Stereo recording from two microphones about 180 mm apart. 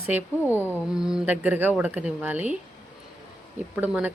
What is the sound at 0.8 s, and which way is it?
A woman's voice, 5° right (ahead or behind).